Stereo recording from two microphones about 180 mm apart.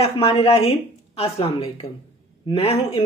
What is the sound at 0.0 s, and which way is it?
Speech, 30° left (ahead or behind).